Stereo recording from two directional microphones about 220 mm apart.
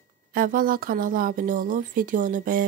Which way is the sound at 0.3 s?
40° right (ahead or behind).